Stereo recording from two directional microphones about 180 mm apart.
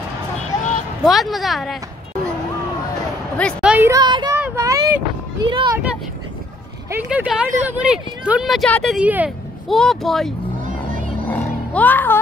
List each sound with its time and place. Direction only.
0.5 s a sound: 20° left (ahead or behind)
1.0 s speech: centre (ahead or behind)
3.6 s a sound: 10° right (ahead or behind); by 5.8 s 25° right (ahead or behind)
6.9 s speech: 10° right (ahead or behind)
8.9 s speech: 10° right (ahead or behind)
11.2 s roaring cats: 10° left (ahead or behind)